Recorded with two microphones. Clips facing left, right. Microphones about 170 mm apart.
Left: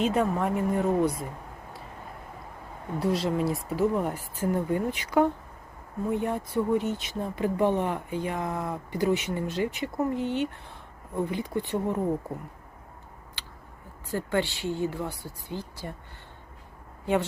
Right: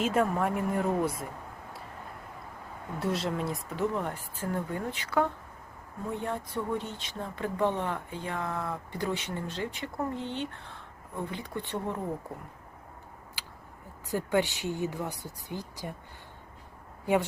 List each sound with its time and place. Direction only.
0.0 s speech: centre (ahead or behind)
3.0 s speech: centre (ahead or behind)
13.4 s a sound: 10° right (ahead or behind)
14.1 s speech: 15° right (ahead or behind)